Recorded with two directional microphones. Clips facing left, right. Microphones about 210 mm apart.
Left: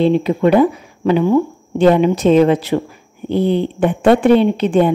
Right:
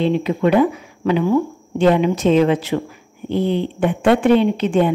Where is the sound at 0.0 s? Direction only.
35° left (ahead or behind).